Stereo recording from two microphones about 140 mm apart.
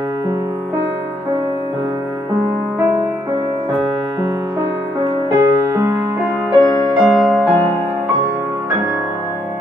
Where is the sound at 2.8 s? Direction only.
10° right (ahead or behind).